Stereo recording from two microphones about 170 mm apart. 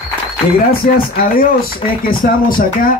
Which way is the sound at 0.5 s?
60° left (ahead or behind).